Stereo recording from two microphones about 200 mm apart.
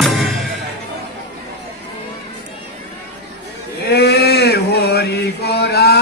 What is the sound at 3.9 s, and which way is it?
Chant, 55° left (ahead or behind).